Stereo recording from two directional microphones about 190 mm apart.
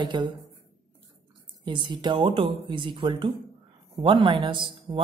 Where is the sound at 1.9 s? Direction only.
25° right (ahead or behind).